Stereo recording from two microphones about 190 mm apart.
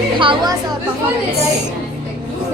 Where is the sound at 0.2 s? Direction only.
25° right (ahead or behind).